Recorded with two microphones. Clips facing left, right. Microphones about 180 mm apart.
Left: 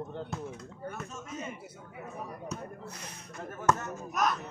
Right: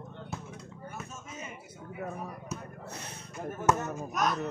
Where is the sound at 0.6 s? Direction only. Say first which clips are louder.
Left 3 dB; 5° right (ahead or behind).